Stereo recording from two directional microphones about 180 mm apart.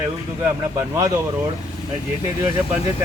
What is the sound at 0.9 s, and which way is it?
Speech, 20° right (ahead or behind).